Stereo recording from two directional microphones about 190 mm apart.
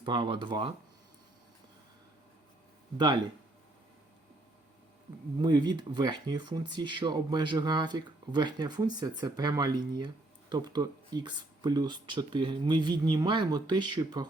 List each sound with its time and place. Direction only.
0.0 s speech: 25° right (ahead or behind)
5.4 s speech: 25° right (ahead or behind)